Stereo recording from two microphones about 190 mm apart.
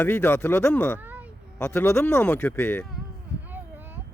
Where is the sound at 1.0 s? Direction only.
10° right (ahead or behind).